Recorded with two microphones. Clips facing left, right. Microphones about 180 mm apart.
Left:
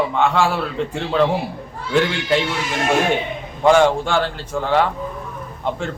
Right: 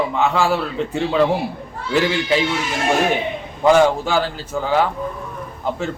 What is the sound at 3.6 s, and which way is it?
A man's voice, centre (ahead or behind).